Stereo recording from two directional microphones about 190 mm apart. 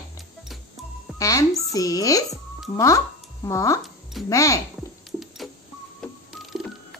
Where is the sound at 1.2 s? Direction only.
20° left (ahead or behind).